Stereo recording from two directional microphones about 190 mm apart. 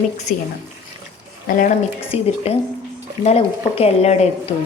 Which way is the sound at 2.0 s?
30° left (ahead or behind).